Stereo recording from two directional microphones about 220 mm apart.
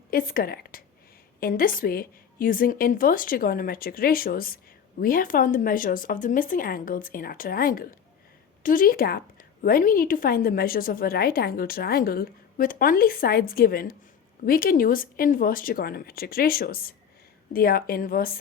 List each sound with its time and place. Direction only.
0.1 s a woman's voice: 40° left (ahead or behind)